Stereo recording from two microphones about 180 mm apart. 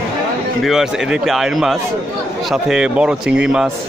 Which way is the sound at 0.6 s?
5° right (ahead or behind).